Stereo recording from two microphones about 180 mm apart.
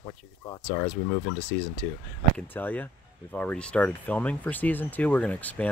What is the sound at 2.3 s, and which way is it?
Speech, 10° left (ahead or behind).